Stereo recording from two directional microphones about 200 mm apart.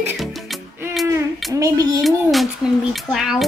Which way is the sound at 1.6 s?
15° right (ahead or behind).